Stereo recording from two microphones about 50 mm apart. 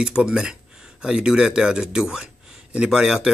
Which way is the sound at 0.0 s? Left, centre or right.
Centre.